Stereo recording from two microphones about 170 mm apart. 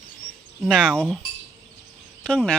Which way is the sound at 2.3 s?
5° left (ahead or behind).